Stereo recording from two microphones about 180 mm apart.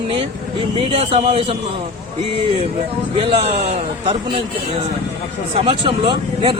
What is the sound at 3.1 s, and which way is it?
Speech, 35° right (ahead or behind).